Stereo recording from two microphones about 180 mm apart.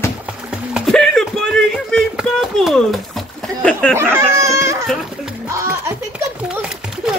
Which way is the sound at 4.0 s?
15° right (ahead or behind).